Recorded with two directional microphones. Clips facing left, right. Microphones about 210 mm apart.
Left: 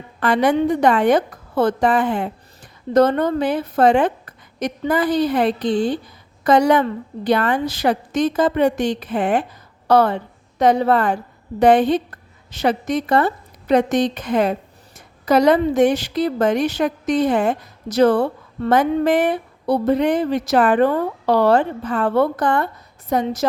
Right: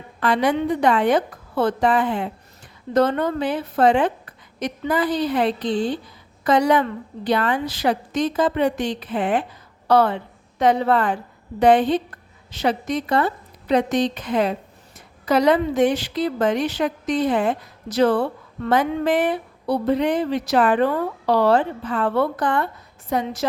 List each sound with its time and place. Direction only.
0.2 s a woman's voice: 50° left (ahead or behind)